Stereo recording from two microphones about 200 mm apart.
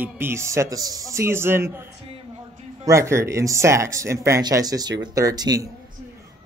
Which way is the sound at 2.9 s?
15° right (ahead or behind).